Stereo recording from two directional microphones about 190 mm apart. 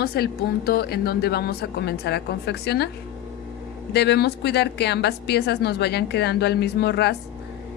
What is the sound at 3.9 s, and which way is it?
A woman's voice, 60° left (ahead or behind).